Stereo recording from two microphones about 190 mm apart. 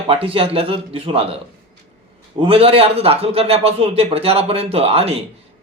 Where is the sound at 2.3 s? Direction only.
30° right (ahead or behind).